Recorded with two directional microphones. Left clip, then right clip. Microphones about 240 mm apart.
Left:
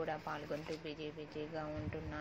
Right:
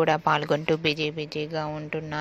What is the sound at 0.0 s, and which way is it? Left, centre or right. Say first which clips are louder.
Speech: right 19 dB; right.